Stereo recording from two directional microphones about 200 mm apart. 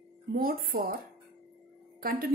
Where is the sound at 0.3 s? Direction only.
45° right (ahead or behind).